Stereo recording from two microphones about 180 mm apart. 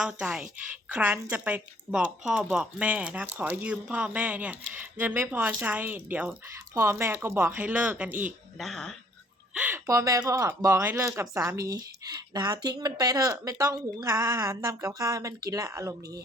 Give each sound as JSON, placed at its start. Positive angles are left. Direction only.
{"t": 0.0, "sound": "speech", "side_deg": -5}
{"t": 9.6, "sound": "speech", "side_deg": -10}